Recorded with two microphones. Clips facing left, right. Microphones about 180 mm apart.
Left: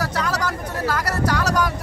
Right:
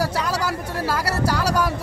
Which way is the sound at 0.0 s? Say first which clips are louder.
Right 1 dB; 10° right (ahead or behind).